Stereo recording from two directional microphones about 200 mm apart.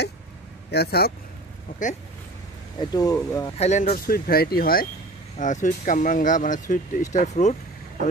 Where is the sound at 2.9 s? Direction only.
20° left (ahead or behind).